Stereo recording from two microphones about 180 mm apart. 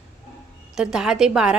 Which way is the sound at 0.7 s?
5° right (ahead or behind).